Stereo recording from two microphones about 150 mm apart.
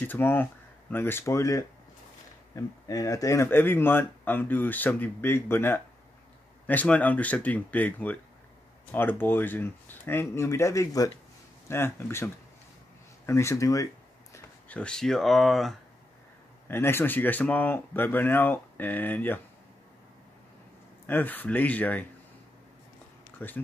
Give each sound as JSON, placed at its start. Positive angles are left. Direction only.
{"t": 0.0, "sound": "speech", "side_deg": 15}
{"t": 14.3, "sound": "speech", "side_deg": 10}
{"t": 16.6, "sound": "speech", "side_deg": 15}
{"t": 21.1, "sound": "speech", "side_deg": 10}
{"t": 23.4, "sound": "speech", "side_deg": 15}